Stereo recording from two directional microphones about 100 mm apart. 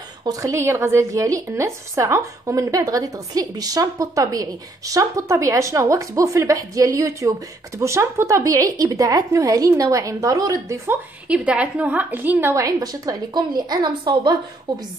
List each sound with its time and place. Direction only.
0.2 s speech: 35° right (ahead or behind)
11.2 s a woman's voice: 10° right (ahead or behind)
12.6 s a woman's voice: 35° right (ahead or behind)